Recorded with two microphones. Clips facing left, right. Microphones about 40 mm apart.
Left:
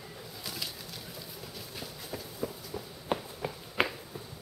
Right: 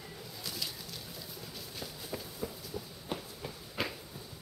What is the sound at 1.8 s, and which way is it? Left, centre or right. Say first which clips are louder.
Walk: even; centre.